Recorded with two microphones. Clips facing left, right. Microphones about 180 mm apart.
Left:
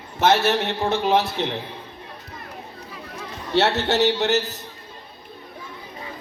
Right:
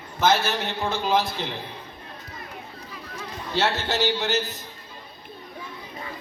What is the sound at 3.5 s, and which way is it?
A man's voice, 70° left (ahead or behind).